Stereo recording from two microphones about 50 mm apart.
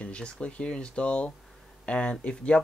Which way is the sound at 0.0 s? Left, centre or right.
Left.